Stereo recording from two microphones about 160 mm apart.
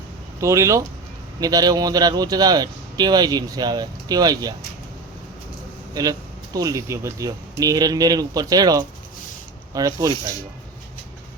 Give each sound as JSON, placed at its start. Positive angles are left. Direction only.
{"t": 0.3, "sound": "a man's voice", "side_deg": -20}
{"t": 5.9, "sound": "a man's voice", "side_deg": -25}